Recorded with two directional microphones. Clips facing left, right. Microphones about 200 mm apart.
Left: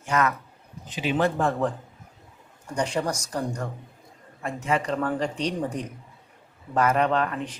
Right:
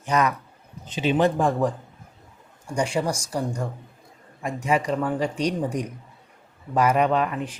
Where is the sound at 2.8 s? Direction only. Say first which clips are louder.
Right 2 dB; 10° right (ahead or behind).